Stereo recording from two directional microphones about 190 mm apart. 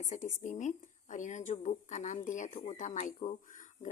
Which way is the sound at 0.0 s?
40° left (ahead or behind).